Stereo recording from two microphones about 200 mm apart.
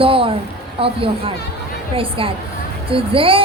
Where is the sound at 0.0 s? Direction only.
25° right (ahead or behind).